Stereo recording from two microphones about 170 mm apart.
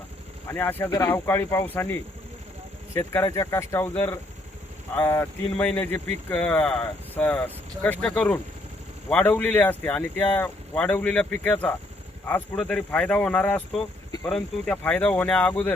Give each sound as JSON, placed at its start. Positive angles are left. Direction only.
{"t": 0.5, "sound": "speech", "side_deg": 10}